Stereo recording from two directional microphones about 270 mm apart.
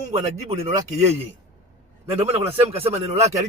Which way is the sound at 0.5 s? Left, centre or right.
Right.